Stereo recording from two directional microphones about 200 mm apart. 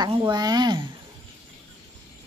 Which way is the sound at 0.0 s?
20° right (ahead or behind).